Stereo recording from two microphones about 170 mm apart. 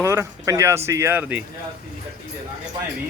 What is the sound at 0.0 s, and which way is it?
Speech, 15° right (ahead or behind).